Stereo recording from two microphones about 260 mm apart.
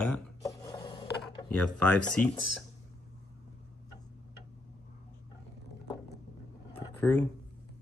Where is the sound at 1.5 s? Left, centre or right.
Centre.